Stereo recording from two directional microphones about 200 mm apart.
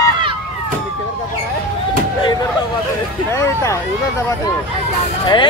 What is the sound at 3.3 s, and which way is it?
Speech, 15° left (ahead or behind).